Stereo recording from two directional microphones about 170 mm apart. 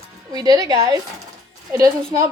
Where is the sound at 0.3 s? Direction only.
20° right (ahead or behind).